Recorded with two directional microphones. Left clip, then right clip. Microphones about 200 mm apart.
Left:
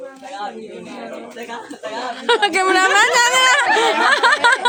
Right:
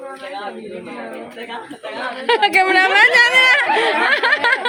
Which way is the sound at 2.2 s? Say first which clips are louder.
Right 2 dB; 25° left (ahead or behind).